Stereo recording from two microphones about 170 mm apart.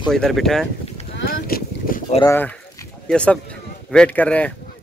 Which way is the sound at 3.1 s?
5° left (ahead or behind).